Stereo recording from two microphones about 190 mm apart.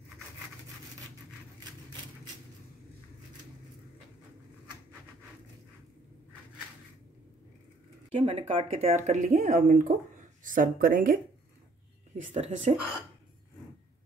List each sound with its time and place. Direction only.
8.1 s speech: 30° right (ahead or behind); by 11.1 s 45° right (ahead or behind)
12.2 s speech: 35° right (ahead or behind)